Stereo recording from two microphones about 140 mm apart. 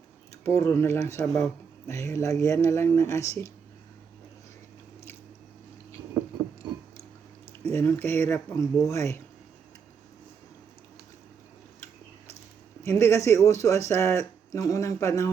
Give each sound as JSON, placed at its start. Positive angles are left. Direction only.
{"t": 0.4, "sound": "speech", "side_deg": 20}
{"t": 7.7, "sound": "speech", "side_deg": 15}
{"t": 12.8, "sound": "speech", "side_deg": 20}